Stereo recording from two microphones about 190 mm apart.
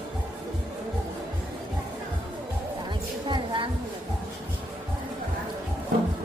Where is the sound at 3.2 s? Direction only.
25° right (ahead or behind).